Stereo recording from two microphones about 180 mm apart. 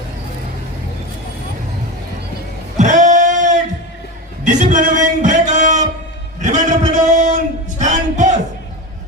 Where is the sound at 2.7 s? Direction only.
45° right (ahead or behind).